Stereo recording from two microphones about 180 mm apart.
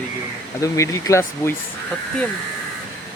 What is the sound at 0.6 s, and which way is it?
Speech, 15° left (ahead or behind).